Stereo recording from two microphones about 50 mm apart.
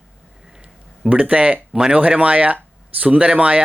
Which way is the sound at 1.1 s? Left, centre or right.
Right.